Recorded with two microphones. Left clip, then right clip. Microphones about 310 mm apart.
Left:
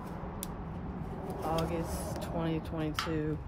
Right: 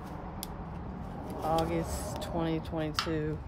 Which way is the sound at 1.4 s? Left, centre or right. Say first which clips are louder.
Right 4 dB; right.